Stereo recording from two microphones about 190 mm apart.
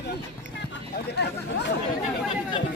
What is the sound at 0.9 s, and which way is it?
Speech, 60° left (ahead or behind).